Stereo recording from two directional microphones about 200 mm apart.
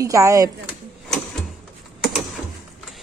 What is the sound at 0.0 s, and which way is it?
Speech, 15° right (ahead or behind).